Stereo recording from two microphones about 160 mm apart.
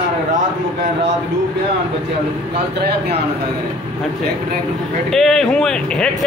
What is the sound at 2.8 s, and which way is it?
Speech, 90° right.